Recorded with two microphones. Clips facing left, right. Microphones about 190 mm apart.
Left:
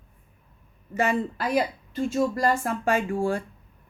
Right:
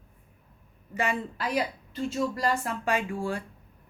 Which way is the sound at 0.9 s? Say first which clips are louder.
Left 5 dB; 45° left (ahead or behind).